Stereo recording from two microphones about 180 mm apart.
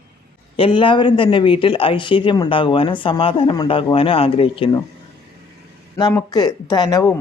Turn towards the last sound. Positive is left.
turn(degrees=20)  # may be behind; listen again after turning